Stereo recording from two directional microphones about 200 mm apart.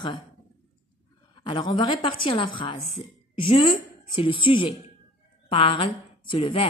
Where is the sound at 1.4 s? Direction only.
20° left (ahead or behind).